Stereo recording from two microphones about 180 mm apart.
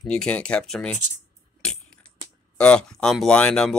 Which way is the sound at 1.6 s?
5° left (ahead or behind).